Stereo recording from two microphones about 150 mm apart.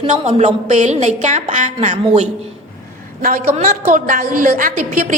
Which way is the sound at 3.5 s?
60° right (ahead or behind).